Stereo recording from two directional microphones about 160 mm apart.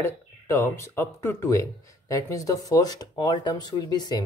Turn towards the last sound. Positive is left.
turn(degrees=25)  # may be behind; listen again after turning